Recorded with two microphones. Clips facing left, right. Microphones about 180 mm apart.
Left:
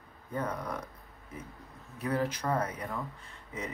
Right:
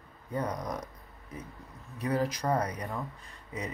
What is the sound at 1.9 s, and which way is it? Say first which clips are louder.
Speech: right 1 dB; 15° right (ahead or behind).